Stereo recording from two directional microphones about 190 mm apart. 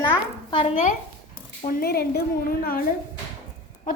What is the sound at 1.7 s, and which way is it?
A woman's voice, 55° left (ahead or behind).